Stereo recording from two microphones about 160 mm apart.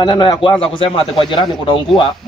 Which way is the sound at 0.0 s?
30° left (ahead or behind).